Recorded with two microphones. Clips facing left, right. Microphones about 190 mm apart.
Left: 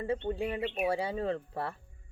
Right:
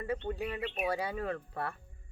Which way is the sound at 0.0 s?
25° left (ahead or behind).